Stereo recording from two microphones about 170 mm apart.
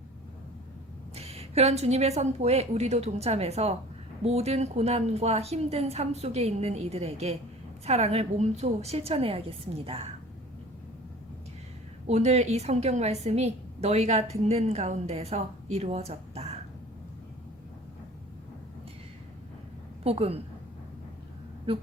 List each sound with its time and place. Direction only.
1.1 s a woman's voice: 35° right (ahead or behind)
12.0 s a woman's voice: 40° right (ahead or behind)
20.1 s a woman's voice: 35° right (ahead or behind)
21.7 s a woman's voice: 30° right (ahead or behind)